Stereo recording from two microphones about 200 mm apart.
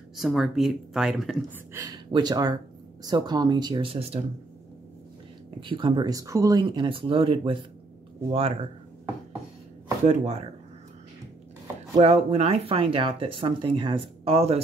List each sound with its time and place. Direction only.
0.1 s speech: centre (ahead or behind)
1.7 s speech: 20° right (ahead or behind)
5.6 s speech: 25° right (ahead or behind)
10.0 s speech: 35° right (ahead or behind)
11.9 s speech: 30° right (ahead or behind)